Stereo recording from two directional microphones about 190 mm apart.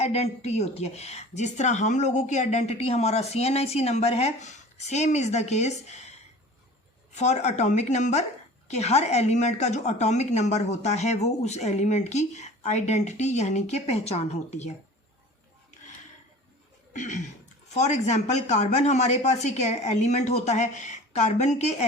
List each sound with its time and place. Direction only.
0.0 s a woman's voice: 35° left (ahead or behind)
16.9 s a woman's voice: 40° left (ahead or behind)